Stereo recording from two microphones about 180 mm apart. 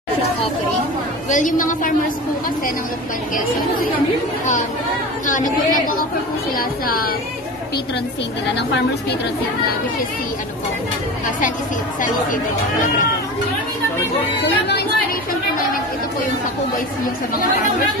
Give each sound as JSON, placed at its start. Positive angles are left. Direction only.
{"t": 1.3, "sound": "a woman's voice", "side_deg": 45}
{"t": 5.2, "sound": "a woman's voice", "side_deg": 45}
{"t": 14.4, "sound": "speech", "side_deg": 65}